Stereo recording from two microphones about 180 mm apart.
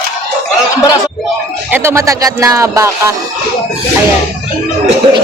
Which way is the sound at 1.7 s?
15° right (ahead or behind).